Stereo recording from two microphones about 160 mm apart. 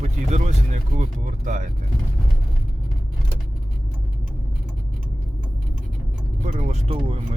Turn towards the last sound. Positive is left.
turn(degrees=-40)  # may be behind; listen again after turning